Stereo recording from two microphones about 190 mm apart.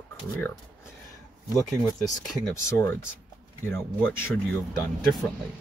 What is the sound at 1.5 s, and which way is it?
Speech, 20° left (ahead or behind).